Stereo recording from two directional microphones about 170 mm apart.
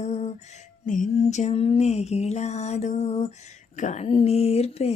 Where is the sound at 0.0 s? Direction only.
40° left (ahead or behind).